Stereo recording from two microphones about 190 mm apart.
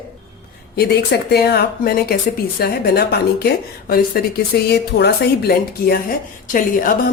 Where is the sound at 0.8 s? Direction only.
55° left (ahead or behind).